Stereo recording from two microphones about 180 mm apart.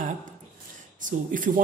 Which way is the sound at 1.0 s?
45° right (ahead or behind).